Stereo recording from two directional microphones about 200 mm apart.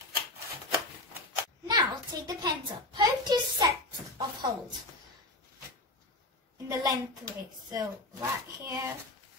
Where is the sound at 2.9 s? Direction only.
20° right (ahead or behind).